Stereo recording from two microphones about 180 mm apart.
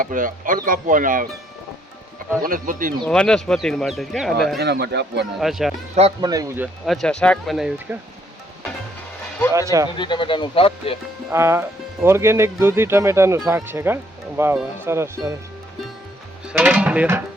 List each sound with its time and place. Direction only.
0.0 s speech: 50° right (ahead or behind)
2.4 s speech: 50° right (ahead or behind)
3.0 s speech: 5° left (ahead or behind)
4.6 s speech: 65° right (ahead or behind)
5.4 s speech: centre (ahead or behind)
6.2 s speech: 20° right (ahead or behind)
6.8 s speech: centre (ahead or behind)
9.5 s speech: 20° right (ahead or behind)
10.0 s speech: 25° left (ahead or behind)
11.3 s speech: 15° right (ahead or behind)
16.5 s speech: 5° right (ahead or behind)